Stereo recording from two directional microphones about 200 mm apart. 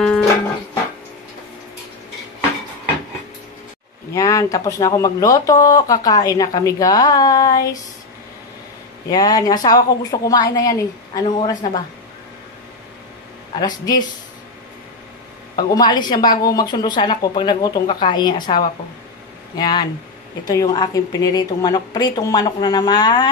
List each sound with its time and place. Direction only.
0.0 s music: 5° left (ahead or behind)
4.1 s speech: 15° left (ahead or behind)
9.1 s a woman's voice: 20° left (ahead or behind)
15.5 s a woman's voice: 20° left (ahead or behind)